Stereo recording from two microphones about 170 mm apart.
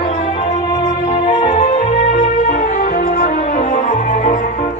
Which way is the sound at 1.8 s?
50° left (ahead or behind).